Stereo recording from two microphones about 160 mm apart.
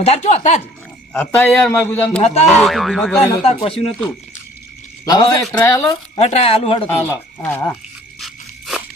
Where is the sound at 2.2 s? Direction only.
40° left (ahead or behind).